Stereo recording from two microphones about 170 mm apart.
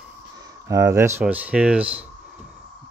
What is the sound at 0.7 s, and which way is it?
Speech, 20° right (ahead or behind).